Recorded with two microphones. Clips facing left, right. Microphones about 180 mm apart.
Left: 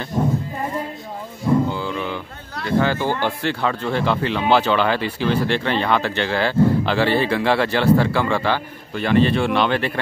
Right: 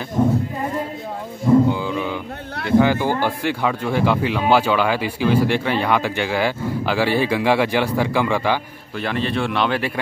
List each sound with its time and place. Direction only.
1.7 s music: 15° right (ahead or behind)
2.6 s speech: 15° right (ahead or behind)
8.9 s speech: centre (ahead or behind)